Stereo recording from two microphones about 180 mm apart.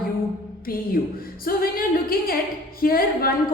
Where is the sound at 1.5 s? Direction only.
55° left (ahead or behind).